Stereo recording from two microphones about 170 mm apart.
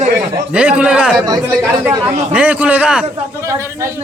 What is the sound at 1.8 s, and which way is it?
A man's voice, 15° right (ahead or behind).